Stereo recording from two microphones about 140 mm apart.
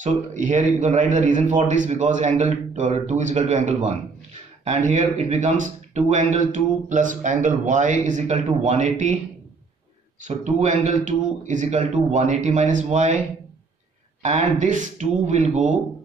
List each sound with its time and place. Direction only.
0.0 s speech: 60° right (ahead or behind)
10.2 s speech: 60° right (ahead or behind)
14.2 s speech: 60° right (ahead or behind)